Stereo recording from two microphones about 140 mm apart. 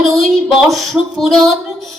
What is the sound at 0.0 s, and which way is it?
Speech, centre (ahead or behind).